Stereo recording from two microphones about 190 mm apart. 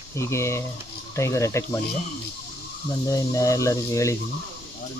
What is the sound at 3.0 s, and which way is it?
Speech, 15° left (ahead or behind).